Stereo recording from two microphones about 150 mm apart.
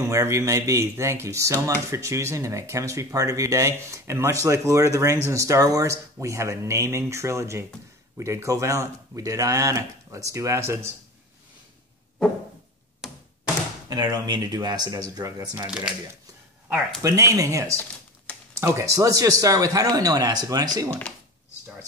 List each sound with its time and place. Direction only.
0.0 s speech: 20° right (ahead or behind)
13.0 s a sound: 5° right (ahead or behind)
13.8 s speech: 30° right (ahead or behind)
15.6 s speech: 5° right (ahead or behind)
17.0 s speech: 20° right (ahead or behind)